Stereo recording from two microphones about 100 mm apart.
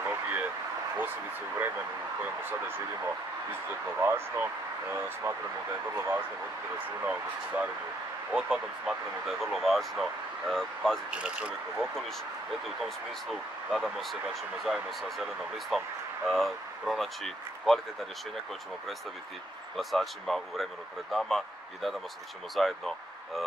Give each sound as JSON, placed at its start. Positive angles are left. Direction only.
{"t": 0.0, "sound": "a sound", "side_deg": -20}
{"t": 4.0, "sound": "speech", "side_deg": -20}
{"t": 11.1, "sound": "speech", "side_deg": -10}
{"t": 11.7, "sound": "speech", "side_deg": 0}
{"t": 19.8, "sound": "speech", "side_deg": 0}